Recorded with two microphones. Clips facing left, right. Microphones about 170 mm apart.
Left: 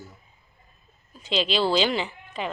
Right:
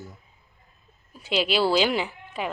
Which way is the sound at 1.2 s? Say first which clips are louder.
Right 1 dB; 10° right (ahead or behind).